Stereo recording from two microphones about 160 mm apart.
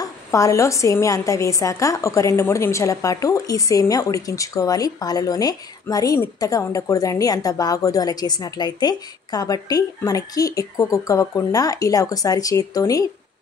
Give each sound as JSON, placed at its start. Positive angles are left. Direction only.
{"t": 0.0, "sound": "a woman's voice", "side_deg": 20}